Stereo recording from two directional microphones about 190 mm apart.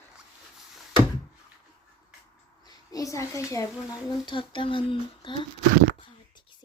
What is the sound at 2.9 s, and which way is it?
A woman's voice, 15° left (ahead or behind).